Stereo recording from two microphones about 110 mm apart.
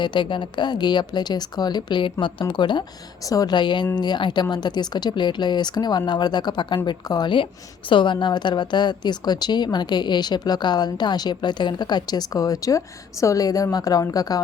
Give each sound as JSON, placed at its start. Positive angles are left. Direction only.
{"t": 0.0, "sound": "a woman's voice", "side_deg": 45}